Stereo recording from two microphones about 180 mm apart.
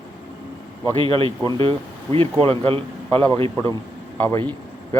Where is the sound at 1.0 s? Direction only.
30° right (ahead or behind).